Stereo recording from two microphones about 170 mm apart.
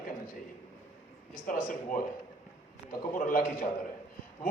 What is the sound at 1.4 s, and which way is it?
Speech, 55° left (ahead or behind).